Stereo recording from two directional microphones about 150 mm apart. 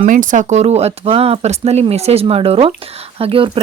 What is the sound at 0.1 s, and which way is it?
Speech, 60° right (ahead or behind).